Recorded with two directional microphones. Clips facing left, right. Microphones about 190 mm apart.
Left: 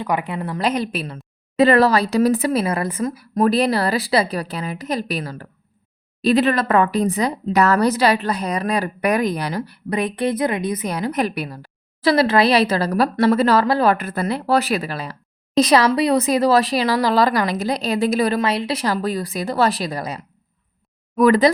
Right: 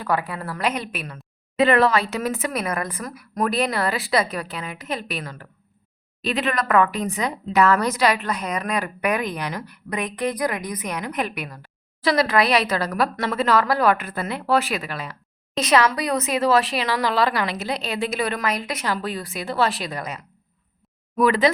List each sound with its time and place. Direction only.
0.0 s a woman's voice: 20° left (ahead or behind)
0.6 s a woman's voice: 30° left (ahead or behind)
14.0 s a woman's voice: 40° left (ahead or behind)